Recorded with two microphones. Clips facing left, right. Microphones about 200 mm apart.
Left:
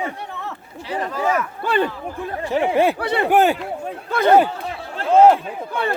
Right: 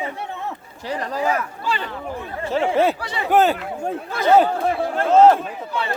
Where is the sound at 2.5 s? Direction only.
15° left (ahead or behind).